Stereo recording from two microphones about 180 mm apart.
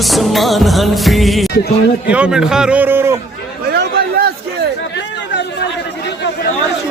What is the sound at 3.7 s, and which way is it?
Chatter, 65° right (ahead or behind).